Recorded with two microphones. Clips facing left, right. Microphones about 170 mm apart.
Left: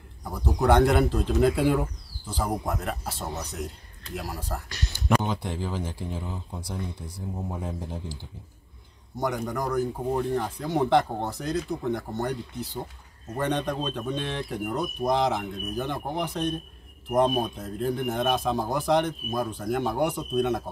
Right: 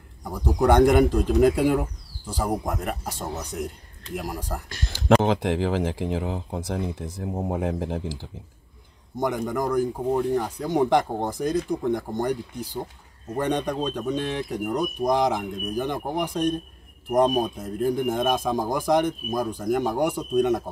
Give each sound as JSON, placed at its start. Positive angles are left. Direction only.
{"t": 0.7, "sound": "speech", "side_deg": -15}
{"t": 4.8, "sound": "speech", "side_deg": -90}
{"t": 7.5, "sound": "speech", "side_deg": -75}
{"t": 9.8, "sound": "speech", "side_deg": -10}